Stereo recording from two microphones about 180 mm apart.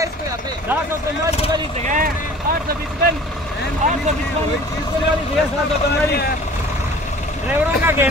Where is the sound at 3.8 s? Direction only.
45° right (ahead or behind).